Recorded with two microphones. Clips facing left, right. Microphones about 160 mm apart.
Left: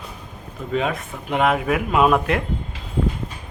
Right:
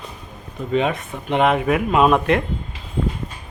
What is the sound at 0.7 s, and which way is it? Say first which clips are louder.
Speech: right 3 dB; centre (ahead or behind).